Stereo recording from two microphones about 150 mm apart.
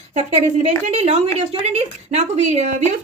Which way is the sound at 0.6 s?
45° right (ahead or behind).